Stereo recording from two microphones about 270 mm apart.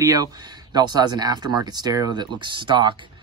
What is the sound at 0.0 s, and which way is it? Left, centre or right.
Speech, centre.